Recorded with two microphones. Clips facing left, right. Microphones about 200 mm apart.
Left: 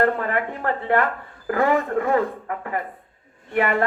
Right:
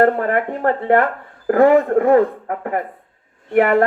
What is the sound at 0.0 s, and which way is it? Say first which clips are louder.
Speech: right 6 dB; 50° right (ahead or behind).